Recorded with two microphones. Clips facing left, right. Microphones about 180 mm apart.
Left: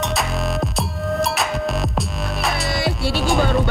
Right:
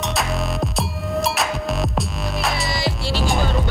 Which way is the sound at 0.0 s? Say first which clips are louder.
Left 1 dB; centre (ahead or behind).